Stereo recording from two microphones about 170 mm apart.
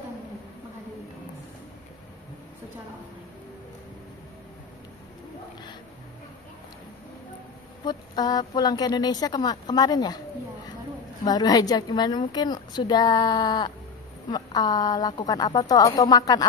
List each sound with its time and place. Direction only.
7.8 s a woman's voice: 25° left (ahead or behind)